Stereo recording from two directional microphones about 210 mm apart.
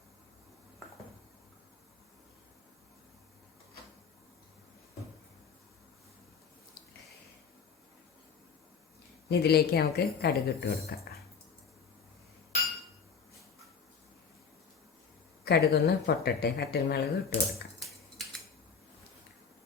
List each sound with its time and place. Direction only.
9.3 s speech: 50° left (ahead or behind)
15.4 s speech: 50° left (ahead or behind)